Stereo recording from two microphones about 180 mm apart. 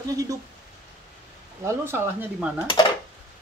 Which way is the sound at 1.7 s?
15° right (ahead or behind).